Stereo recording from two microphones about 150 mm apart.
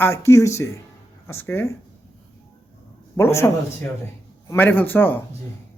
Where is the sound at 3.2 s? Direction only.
15° left (ahead or behind).